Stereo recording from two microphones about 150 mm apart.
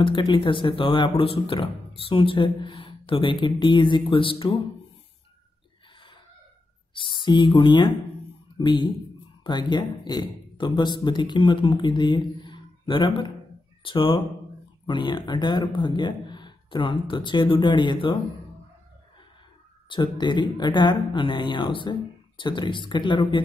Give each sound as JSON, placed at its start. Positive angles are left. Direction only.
{"t": 0.0, "sound": "speech", "side_deg": 35}
{"t": 6.9, "sound": "speech", "side_deg": 35}
{"t": 19.9, "sound": "speech", "side_deg": 30}